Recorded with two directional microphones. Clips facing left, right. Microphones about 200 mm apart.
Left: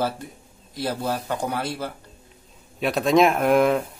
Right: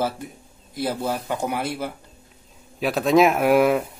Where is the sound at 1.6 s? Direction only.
20° right (ahead or behind).